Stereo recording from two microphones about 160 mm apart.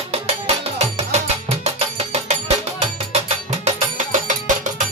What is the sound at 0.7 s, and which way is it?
Music, 45° right (ahead or behind).